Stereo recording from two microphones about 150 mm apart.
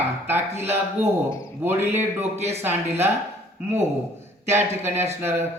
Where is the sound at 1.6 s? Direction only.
15° right (ahead or behind).